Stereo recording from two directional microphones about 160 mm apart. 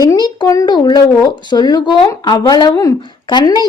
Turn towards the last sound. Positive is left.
turn(degrees=25)  # may be behind; listen again after turning